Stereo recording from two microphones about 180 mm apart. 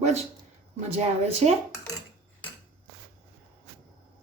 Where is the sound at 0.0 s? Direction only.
40° right (ahead or behind).